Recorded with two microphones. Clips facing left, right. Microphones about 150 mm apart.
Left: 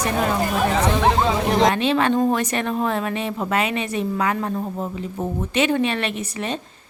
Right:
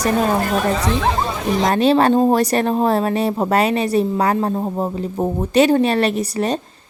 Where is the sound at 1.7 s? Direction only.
40° right (ahead or behind).